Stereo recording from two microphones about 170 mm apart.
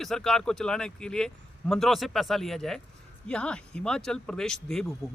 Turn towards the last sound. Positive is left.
turn(degrees=0)  # may be behind; listen again after turning